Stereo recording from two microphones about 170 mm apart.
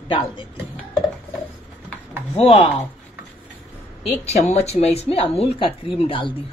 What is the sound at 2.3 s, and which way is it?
Speech, 35° left (ahead or behind).